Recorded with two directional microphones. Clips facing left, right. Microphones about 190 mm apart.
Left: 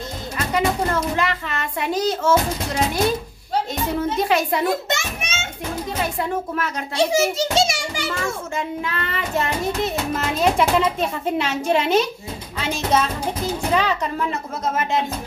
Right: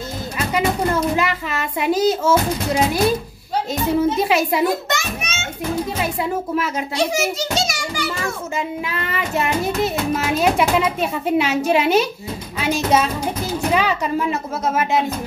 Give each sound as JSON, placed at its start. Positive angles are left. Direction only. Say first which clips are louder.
{"t": 0.4, "sound": "music", "louder": "right 1 dB", "side_deg": -10}
{"t": 4.0, "sound": "music", "louder": "right 1 dB", "side_deg": -5}
{"t": 4.8, "sound": "children playing", "louder": "right 1 dB", "side_deg": 25}
{"t": 6.2, "sound": "music", "louder": "right 3 dB", "side_deg": -5}
{"t": 7.1, "sound": "children playing", "louder": "left 2 dB", "side_deg": 30}
{"t": 8.5, "sound": "music", "louder": "right 1 dB", "side_deg": -10}